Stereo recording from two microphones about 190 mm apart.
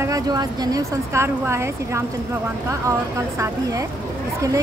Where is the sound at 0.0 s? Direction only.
20° right (ahead or behind).